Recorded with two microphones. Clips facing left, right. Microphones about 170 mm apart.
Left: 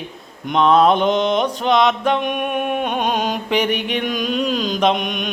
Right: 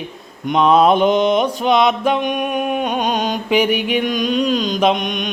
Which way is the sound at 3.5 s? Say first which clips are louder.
Right 5 dB; 10° right (ahead or behind).